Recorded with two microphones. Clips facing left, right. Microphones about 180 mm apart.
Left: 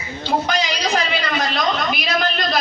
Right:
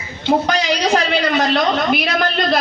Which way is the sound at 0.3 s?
65° right (ahead or behind).